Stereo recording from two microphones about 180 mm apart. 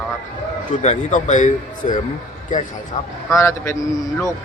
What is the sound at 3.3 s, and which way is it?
Speech, 15° left (ahead or behind).